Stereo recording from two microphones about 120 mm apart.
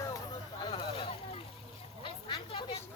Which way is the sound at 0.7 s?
55° left (ahead or behind).